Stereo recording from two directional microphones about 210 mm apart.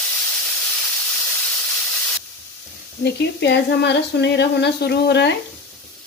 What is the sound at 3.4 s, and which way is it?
Speech, 55° left (ahead or behind).